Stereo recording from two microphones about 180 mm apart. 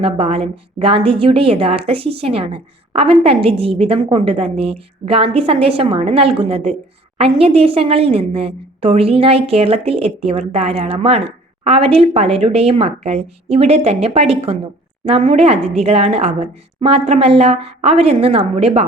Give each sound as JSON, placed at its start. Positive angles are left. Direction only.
{"t": 0.0, "sound": "a woman's voice", "side_deg": -30}